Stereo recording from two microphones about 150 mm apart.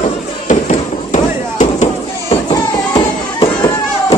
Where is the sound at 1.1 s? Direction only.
55° left (ahead or behind).